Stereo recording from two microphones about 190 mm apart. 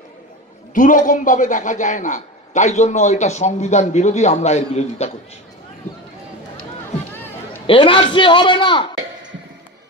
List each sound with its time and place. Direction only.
0.7 s a man's voice: 45° left (ahead or behind)
7.6 s a man's voice: 25° left (ahead or behind)